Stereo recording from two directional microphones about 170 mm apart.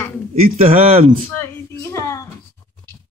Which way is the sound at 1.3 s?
15° left (ahead or behind).